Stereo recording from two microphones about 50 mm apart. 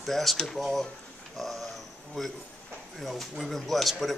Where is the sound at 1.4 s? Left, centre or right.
Centre.